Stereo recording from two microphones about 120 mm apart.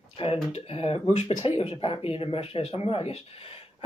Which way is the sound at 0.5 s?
55° left (ahead or behind).